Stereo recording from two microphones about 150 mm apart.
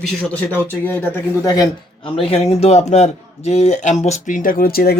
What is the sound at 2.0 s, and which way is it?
Speech, 40° left (ahead or behind).